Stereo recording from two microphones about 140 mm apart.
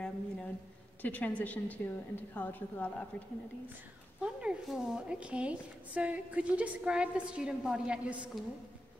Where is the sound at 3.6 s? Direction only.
10° right (ahead or behind).